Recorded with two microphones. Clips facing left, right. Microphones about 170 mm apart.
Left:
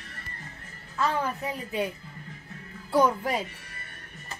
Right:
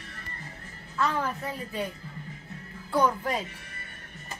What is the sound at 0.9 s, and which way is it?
Speech, 10° left (ahead or behind).